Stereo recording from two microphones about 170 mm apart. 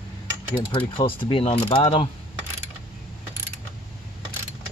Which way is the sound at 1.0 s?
30° left (ahead or behind).